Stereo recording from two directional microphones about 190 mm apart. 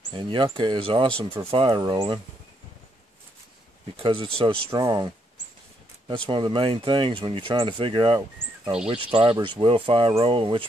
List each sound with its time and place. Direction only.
0.1 s speech: 25° right (ahead or behind)
3.9 s speech: 25° right (ahead or behind)